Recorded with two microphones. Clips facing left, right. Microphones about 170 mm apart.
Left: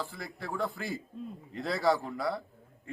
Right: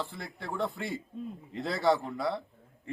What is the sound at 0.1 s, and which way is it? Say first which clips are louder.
A man's voice: even; centre (ahead or behind).